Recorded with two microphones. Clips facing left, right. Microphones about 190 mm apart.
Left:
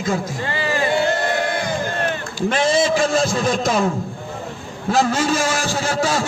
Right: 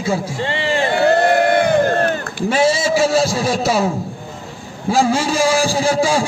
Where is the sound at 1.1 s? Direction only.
60° right (ahead or behind).